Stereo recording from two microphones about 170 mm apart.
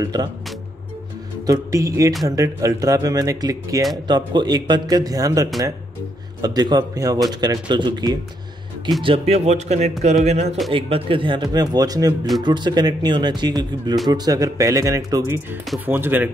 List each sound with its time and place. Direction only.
0.0 s speech: 25° right (ahead or behind)
1.4 s speech: 20° right (ahead or behind)